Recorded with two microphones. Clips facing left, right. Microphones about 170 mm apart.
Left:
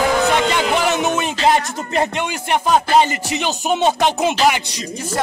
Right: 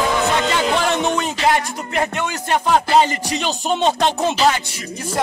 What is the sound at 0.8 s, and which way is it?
Music, 5° left (ahead or behind).